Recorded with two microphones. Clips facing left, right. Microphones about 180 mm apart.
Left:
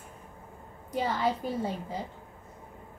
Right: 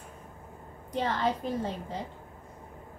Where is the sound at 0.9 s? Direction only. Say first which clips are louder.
Even; 5° left (ahead or behind).